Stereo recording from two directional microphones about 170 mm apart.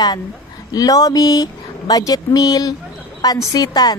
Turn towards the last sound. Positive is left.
turn(degrees=20)  # may be behind; listen again after turning